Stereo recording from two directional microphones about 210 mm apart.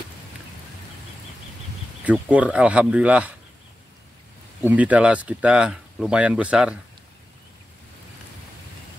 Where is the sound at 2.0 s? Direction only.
5° right (ahead or behind).